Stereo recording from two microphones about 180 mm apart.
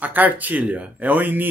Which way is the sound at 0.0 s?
10° right (ahead or behind).